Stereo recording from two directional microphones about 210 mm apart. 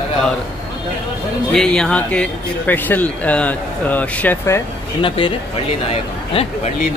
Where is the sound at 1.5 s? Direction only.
5° left (ahead or behind).